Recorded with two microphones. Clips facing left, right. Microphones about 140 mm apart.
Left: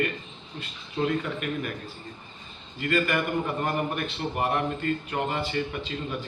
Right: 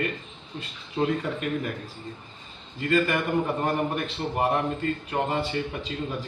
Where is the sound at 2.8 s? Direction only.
30° right (ahead or behind).